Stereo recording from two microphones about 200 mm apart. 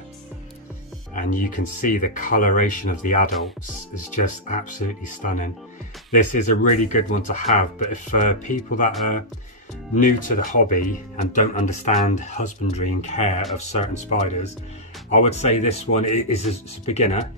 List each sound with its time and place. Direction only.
1.1 s speech: 40° left (ahead or behind)
9.9 s speech: 40° left (ahead or behind)